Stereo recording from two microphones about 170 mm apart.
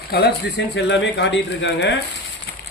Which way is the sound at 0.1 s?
75° left (ahead or behind).